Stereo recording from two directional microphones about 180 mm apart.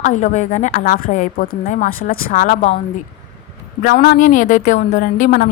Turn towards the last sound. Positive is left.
turn(degrees=50)  # may be behind; listen again after turning